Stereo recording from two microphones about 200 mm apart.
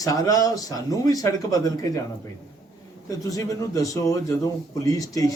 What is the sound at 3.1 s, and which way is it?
A man's voice, 15° left (ahead or behind).